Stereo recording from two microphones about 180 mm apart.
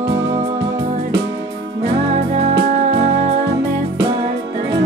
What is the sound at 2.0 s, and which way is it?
Music, 35° right (ahead or behind).